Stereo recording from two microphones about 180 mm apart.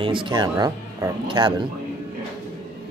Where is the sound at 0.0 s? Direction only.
30° right (ahead or behind).